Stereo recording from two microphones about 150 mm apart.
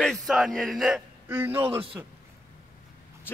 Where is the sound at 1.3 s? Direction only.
15° right (ahead or behind).